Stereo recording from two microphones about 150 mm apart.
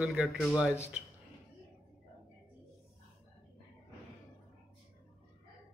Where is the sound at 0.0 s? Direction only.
5° right (ahead or behind).